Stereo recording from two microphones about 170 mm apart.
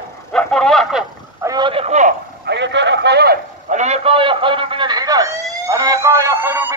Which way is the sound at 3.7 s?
40° right (ahead or behind).